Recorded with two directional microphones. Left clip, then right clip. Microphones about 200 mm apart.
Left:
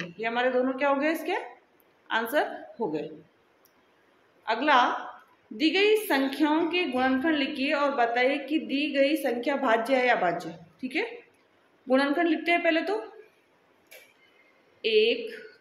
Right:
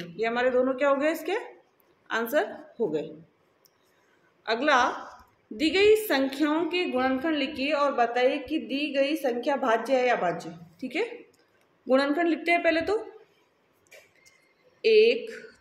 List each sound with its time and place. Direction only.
0.2 s a woman's voice: 25° right (ahead or behind)
4.4 s a woman's voice: 25° right (ahead or behind)
14.8 s a woman's voice: 25° right (ahead or behind)